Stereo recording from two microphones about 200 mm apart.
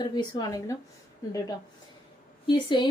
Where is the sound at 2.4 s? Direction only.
20° left (ahead or behind).